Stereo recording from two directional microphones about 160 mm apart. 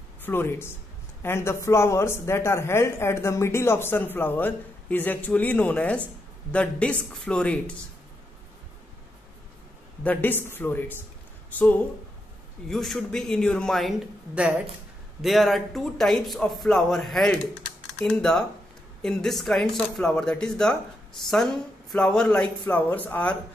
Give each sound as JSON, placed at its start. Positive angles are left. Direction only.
{"t": 0.2, "sound": "a woman's voice", "side_deg": 15}
{"t": 10.0, "sound": "a woman's voice", "side_deg": 10}
{"t": 21.9, "sound": "a woman's voice", "side_deg": 5}